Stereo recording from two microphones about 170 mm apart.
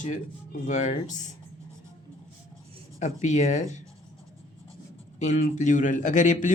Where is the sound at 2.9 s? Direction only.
45° left (ahead or behind).